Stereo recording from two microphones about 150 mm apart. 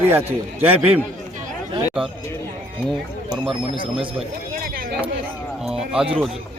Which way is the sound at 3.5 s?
35° right (ahead or behind).